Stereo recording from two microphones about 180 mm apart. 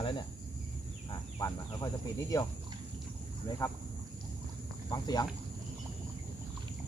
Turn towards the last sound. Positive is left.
turn(degrees=20)  # may be behind; listen again after turning